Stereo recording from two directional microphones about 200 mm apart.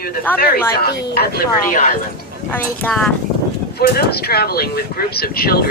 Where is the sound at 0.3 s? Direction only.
50° left (ahead or behind).